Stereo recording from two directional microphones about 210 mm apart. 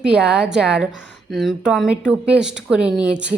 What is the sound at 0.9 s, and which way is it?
Speech, 55° right (ahead or behind).